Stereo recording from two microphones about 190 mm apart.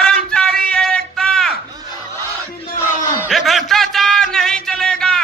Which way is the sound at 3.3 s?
Centre (ahead or behind).